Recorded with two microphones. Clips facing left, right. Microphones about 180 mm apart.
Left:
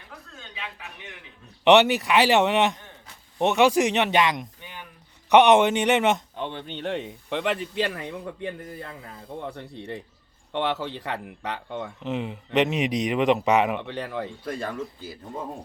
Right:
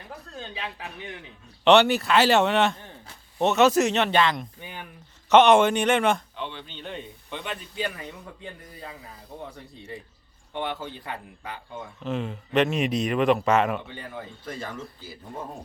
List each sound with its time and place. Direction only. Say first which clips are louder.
0.3 s speech: right 4 dB; 35° right (ahead or behind)
1.6 s speech: left 1 dB; 15° left (ahead or behind)
6.3 s speech: left 4 dB; 50° left (ahead or behind); by 10.0 s 65° left (ahead or behind)
10.5 s speech: left 5 dB; 80° left
11.9 s speech: right 3 dB; 15° left (ahead or behind)
13.7 s speech: left 5 dB; 80° left